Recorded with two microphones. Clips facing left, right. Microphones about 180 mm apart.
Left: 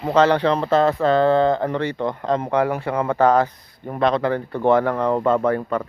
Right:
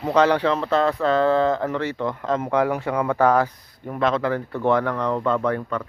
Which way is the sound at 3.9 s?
35° left (ahead or behind).